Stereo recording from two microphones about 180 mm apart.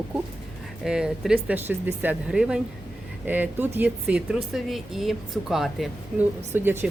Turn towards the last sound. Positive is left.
turn(degrees=-10)  # may be behind; listen again after turning